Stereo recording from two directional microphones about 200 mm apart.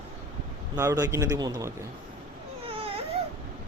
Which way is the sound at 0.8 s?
15° right (ahead or behind).